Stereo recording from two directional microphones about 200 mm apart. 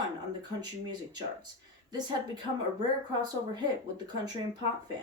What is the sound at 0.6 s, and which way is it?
A woman's voice, 20° right (ahead or behind).